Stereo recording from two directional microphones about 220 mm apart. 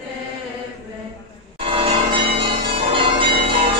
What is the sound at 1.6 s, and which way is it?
Change ringing, 25° right (ahead or behind).